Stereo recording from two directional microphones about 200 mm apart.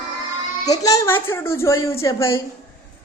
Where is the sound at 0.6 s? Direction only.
20° left (ahead or behind).